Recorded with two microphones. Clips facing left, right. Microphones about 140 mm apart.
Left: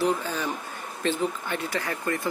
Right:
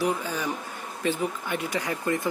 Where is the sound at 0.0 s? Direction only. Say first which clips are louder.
Left 1 dB; 10° right (ahead or behind).